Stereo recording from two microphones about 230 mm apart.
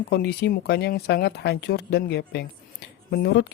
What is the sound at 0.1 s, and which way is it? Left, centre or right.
A woman's voice, left.